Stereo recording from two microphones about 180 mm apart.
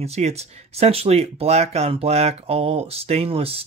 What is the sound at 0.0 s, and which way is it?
Speech, 35° right (ahead or behind).